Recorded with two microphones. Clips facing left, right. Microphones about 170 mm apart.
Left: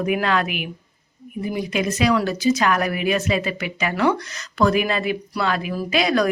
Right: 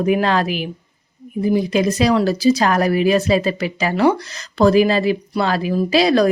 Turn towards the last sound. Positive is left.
turn(degrees=-30)  # may be behind; listen again after turning